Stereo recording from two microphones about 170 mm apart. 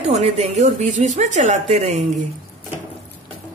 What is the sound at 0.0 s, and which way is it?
Speech, 40° right (ahead or behind).